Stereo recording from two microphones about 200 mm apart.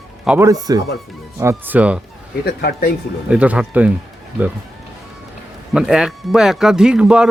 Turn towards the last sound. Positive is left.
turn(degrees=-5)  # may be behind; listen again after turning